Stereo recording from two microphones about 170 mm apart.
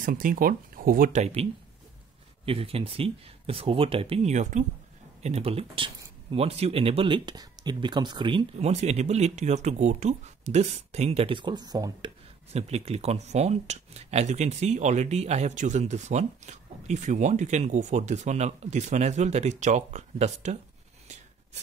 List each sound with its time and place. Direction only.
0.0 s speech: 55° right (ahead or behind); by 12.1 s 25° right (ahead or behind)
12.5 s speech: 40° right (ahead or behind)